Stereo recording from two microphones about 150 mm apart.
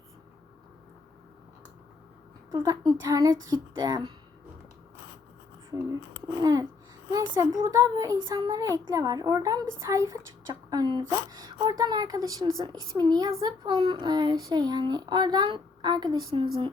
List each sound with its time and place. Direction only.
2.5 s a child's voice: 25° right (ahead or behind)
6.4 s a child's voice: 25° right (ahead or behind)